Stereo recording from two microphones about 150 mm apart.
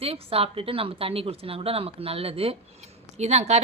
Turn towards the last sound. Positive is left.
turn(degrees=-45)  # may be behind; listen again after turning